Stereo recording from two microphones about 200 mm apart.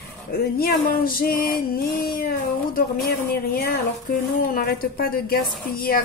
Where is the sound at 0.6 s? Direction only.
45° left (ahead or behind).